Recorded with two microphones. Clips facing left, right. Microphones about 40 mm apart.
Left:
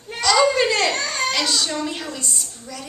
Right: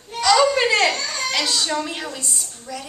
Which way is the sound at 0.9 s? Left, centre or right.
Left.